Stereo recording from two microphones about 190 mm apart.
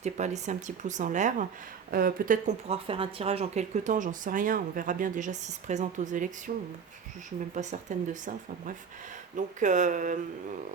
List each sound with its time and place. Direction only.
0.0 s speech: 40° right (ahead or behind)
2.6 s speech: 30° right (ahead or behind)